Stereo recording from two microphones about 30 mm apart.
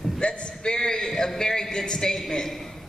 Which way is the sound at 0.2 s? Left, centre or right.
Left.